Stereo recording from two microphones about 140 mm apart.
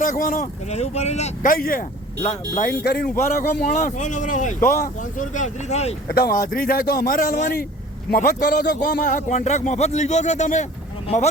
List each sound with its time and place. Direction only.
0.0 s speech: 75° left (ahead or behind); by 1.5 s 50° left (ahead or behind)
1.5 s speech: 85° left; by 5.9 s 55° left (ahead or behind)
6.1 s speech: 90° left
8.1 s speech: 90° left
8.8 s speech: 70° left (ahead or behind)